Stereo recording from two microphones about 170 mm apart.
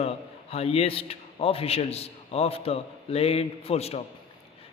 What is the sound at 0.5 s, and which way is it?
A man's voice, 35° left (ahead or behind).